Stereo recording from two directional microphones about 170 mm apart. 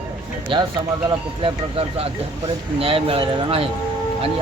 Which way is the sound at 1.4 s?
35° right (ahead or behind).